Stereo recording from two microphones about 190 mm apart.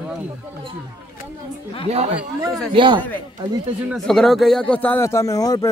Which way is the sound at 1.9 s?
35° right (ahead or behind).